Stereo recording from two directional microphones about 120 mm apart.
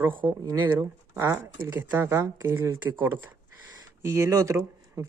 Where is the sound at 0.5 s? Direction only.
25° right (ahead or behind).